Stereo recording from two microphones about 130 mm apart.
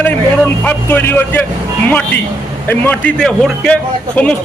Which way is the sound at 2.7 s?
10° left (ahead or behind).